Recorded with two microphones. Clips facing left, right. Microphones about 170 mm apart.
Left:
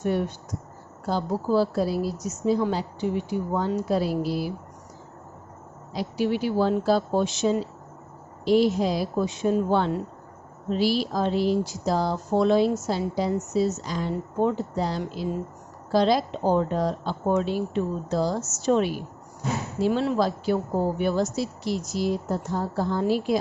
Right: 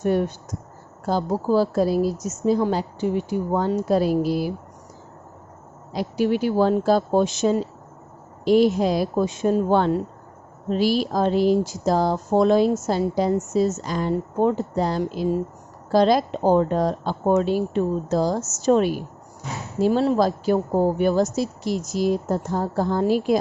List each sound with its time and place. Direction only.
0.0 s a woman's voice: 40° right (ahead or behind)
5.9 s a woman's voice: 50° right (ahead or behind)